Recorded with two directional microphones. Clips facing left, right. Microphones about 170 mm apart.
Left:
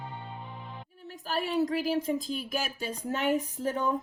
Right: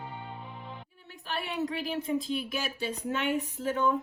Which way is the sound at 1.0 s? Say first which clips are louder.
Left 4 dB; 40° left (ahead or behind).